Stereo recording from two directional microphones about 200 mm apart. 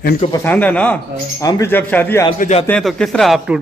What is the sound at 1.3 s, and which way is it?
Speech, 15° left (ahead or behind).